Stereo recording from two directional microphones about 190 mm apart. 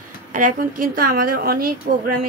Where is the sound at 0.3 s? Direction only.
45° right (ahead or behind).